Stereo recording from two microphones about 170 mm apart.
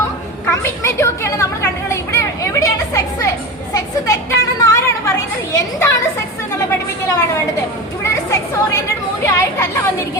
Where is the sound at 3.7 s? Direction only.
20° left (ahead or behind).